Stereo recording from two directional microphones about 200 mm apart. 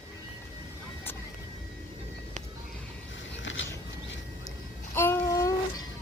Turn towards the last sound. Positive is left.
turn(degrees=20)  # may be behind; listen again after turning